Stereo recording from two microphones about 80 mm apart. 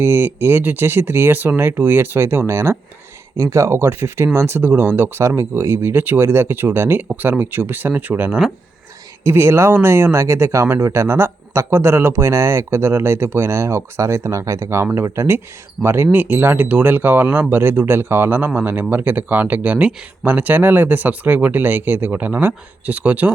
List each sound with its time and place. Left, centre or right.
0.0 s speech: right